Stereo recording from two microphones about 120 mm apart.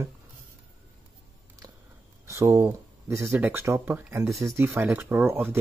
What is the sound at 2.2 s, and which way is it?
Speech, 25° right (ahead or behind).